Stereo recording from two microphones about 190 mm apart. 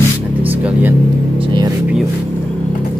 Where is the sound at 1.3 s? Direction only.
25° right (ahead or behind).